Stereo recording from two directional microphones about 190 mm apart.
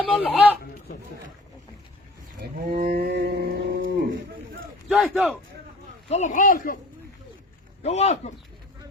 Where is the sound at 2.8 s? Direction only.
50° right (ahead or behind).